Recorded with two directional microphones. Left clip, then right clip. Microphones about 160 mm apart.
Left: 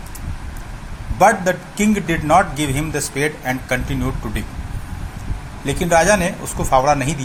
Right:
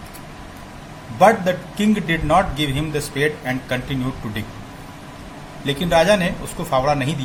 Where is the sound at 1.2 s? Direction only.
20° left (ahead or behind).